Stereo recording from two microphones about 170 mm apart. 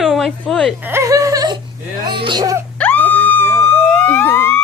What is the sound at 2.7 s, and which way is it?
Police car, 10° left (ahead or behind).